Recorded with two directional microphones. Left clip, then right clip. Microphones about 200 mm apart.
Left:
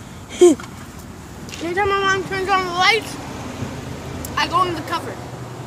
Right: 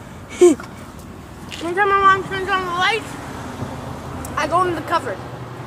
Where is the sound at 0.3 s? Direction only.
Centre (ahead or behind).